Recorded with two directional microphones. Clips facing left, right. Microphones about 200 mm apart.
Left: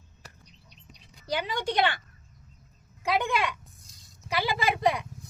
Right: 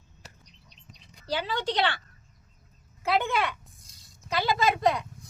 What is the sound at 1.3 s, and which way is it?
Speech, 15° left (ahead or behind).